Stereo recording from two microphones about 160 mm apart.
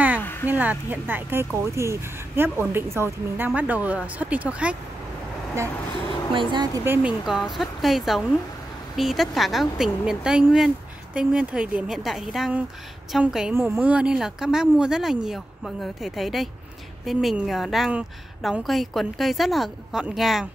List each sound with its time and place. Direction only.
0.2 s a sound: 15° left (ahead or behind)
0.5 s speech: 10° right (ahead or behind)
6.3 s speech: 25° right (ahead or behind)
6.8 s speech: 15° right (ahead or behind)
7.2 s a woman's voice: centre (ahead or behind)